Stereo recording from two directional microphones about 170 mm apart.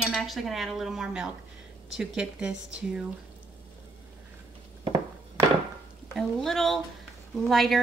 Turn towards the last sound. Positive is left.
turn(degrees=0)  # may be behind; listen again after turning